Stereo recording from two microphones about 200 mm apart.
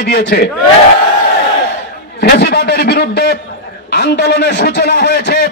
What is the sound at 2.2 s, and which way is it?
A man's voice, 50° left (ahead or behind).